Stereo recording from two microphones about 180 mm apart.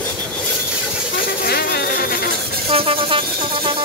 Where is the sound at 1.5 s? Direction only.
60° left (ahead or behind).